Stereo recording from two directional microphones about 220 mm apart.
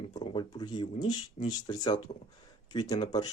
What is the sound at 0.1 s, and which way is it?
Speech, 20° left (ahead or behind).